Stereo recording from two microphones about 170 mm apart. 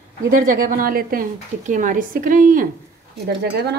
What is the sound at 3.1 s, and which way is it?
Speech, 70° right (ahead or behind).